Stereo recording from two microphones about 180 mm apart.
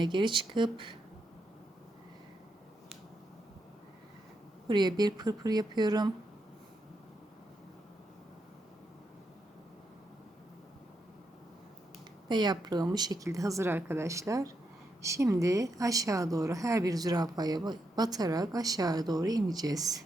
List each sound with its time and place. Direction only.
0.0 s a woman's voice: 25° right (ahead or behind)
4.7 s a woman's voice: 25° right (ahead or behind)
12.3 s a woman's voice: 25° right (ahead or behind)